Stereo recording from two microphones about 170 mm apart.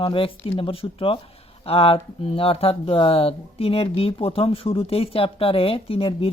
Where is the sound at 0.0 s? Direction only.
30° left (ahead or behind).